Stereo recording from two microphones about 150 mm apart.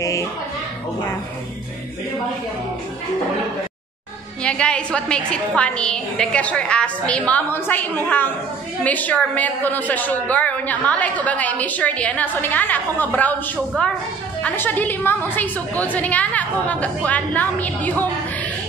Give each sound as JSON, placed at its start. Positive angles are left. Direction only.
{"t": 0.0, "sound": "a sound", "side_deg": 20}
{"t": 4.4, "sound": "a woman's voice", "side_deg": 5}
{"t": 14.4, "sound": "a woman's voice", "side_deg": 10}